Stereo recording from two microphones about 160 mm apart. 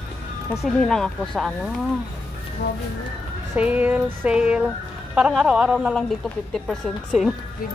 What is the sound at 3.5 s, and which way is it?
Music, 10° right (ahead or behind).